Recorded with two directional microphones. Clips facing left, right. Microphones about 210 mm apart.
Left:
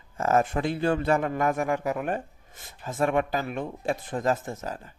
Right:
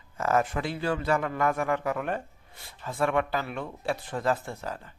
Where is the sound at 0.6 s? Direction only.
50° left (ahead or behind).